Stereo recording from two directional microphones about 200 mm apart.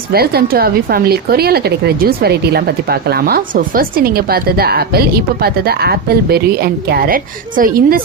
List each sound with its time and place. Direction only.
0.1 s speech: 50° right (ahead or behind)